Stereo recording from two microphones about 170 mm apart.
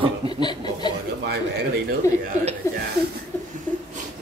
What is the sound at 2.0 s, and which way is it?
Speech, 15° left (ahead or behind).